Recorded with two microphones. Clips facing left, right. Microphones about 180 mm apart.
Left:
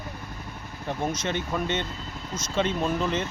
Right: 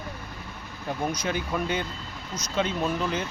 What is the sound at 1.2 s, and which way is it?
Speech, 5° right (ahead or behind).